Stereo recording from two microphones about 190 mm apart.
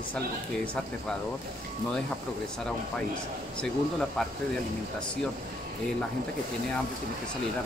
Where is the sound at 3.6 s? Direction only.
5° left (ahead or behind).